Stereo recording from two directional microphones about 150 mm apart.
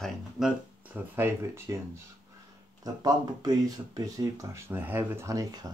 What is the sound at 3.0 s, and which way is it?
Speech, 25° right (ahead or behind).